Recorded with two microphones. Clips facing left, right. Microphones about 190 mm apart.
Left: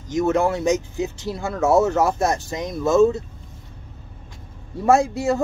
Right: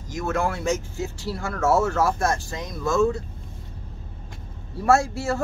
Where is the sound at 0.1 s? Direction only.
20° left (ahead or behind).